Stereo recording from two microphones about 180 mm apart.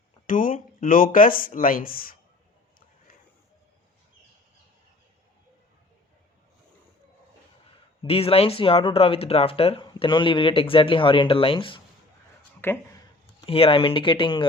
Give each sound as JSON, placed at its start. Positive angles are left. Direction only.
{"t": 0.3, "sound": "speech", "side_deg": 50}
{"t": 8.0, "sound": "speech", "side_deg": 35}
{"t": 12.6, "sound": "speech", "side_deg": 10}
{"t": 13.4, "sound": "speech", "side_deg": 30}